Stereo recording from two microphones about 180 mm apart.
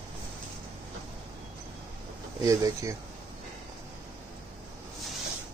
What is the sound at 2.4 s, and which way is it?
Speech, 20° right (ahead or behind).